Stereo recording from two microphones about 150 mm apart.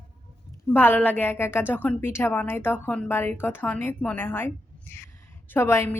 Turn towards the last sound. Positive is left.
turn(degrees=15)  # may be behind; listen again after turning